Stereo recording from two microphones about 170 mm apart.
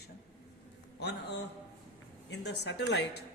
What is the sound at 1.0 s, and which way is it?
A man's voice, 80° left.